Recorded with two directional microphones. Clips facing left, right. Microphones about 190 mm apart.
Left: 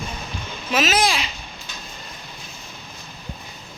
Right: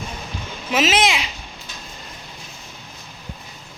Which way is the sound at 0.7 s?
25° right (ahead or behind).